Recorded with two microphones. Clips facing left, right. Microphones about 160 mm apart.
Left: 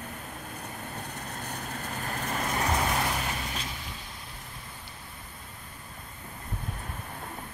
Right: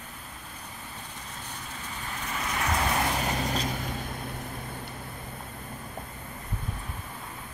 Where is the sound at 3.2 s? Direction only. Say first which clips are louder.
Right 6 dB; 40° right (ahead or behind); by 4.9 s 55° right (ahead or behind).